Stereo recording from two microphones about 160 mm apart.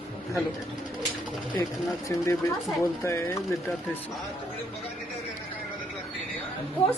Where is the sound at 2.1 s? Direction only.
20° left (ahead or behind).